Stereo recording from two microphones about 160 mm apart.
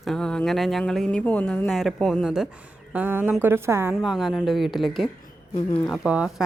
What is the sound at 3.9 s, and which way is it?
Speech, centre (ahead or behind).